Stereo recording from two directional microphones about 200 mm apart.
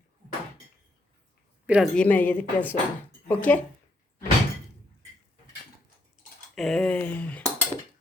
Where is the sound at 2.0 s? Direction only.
10° left (ahead or behind).